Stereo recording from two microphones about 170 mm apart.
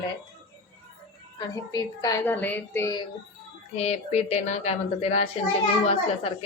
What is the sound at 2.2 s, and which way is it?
Speech, 10° left (ahead or behind).